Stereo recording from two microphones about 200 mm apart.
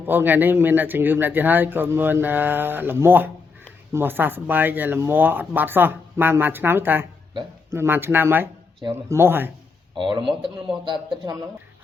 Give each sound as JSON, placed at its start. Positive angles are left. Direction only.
{"t": 0.0, "sound": "speech", "side_deg": -10}
{"t": 9.9, "sound": "speech", "side_deg": -25}